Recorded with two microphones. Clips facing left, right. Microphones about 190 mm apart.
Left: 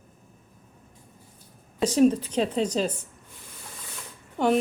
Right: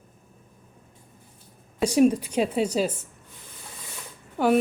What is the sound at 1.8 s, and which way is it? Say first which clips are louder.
A woman's voice: right 1 dB; 10° right (ahead or behind).